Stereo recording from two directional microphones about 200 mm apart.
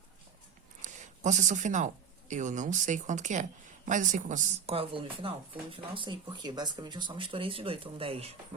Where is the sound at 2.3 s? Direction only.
40° right (ahead or behind).